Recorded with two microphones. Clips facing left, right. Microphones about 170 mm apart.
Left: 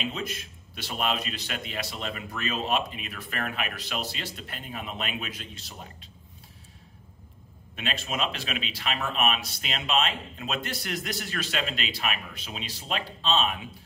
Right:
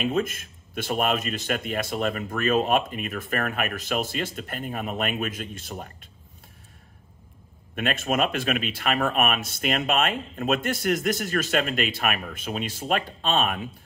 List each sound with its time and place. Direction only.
0.0 s speech: 50° right (ahead or behind)
7.7 s speech: 50° right (ahead or behind)